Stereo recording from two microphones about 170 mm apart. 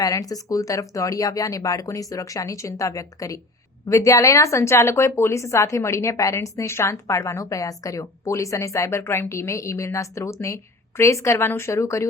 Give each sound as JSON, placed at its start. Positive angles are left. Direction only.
{"t": 0.0, "sound": "speech", "side_deg": 20}